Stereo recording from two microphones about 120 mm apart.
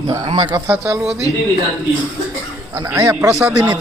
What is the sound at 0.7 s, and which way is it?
Speech, 20° right (ahead or behind).